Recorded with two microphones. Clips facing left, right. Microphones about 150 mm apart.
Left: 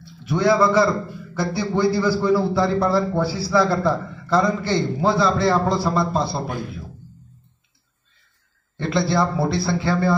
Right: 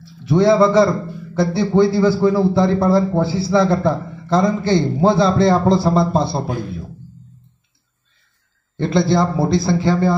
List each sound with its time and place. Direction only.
0.3 s a man's voice: 30° right (ahead or behind)
8.8 s a man's voice: 25° right (ahead or behind)